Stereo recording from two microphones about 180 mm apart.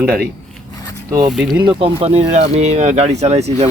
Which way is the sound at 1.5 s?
30° right (ahead or behind).